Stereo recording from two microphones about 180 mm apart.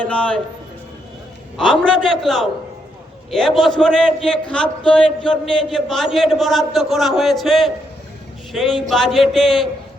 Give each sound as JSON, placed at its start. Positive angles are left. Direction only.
{"t": 0.0, "sound": "a man's voice", "side_deg": 5}
{"t": 1.5, "sound": "a man's voice", "side_deg": 0}